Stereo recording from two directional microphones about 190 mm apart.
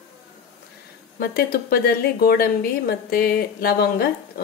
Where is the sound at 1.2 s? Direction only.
55° left (ahead or behind).